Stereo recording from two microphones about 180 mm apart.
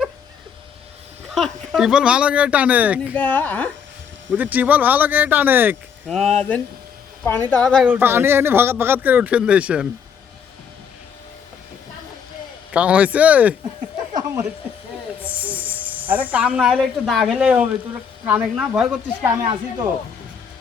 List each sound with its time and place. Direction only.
1.3 s speech: centre (ahead or behind)
3.2 s a woman's voice: 10° left (ahead or behind)
4.4 s speech: 10° right (ahead or behind)
6.1 s a woman's voice: centre (ahead or behind)
7.9 s speech: 10° right (ahead or behind)
12.7 s speech: 10° right (ahead or behind)
14.1 s a sound: 25° right (ahead or behind)
15.3 s speech: 10° right (ahead or behind)